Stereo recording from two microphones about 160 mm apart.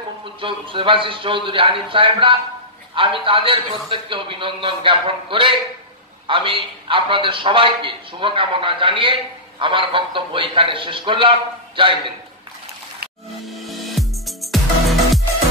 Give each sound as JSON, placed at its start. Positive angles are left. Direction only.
{"t": 0.4, "sound": "a man's voice", "side_deg": -30}
{"t": 13.5, "sound": "music", "side_deg": 0}